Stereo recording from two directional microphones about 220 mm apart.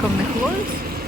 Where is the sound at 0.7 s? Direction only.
40° right (ahead or behind).